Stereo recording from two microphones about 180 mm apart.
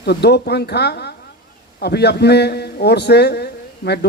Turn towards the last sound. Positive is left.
turn(degrees=65)  # may be behind; listen again after turning